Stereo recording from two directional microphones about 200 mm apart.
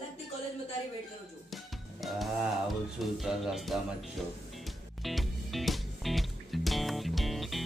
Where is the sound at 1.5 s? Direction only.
Centre (ahead or behind).